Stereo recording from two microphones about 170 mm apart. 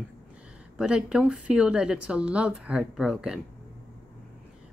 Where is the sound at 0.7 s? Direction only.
5° right (ahead or behind).